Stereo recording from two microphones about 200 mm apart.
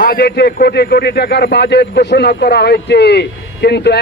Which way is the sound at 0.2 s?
50° left (ahead or behind).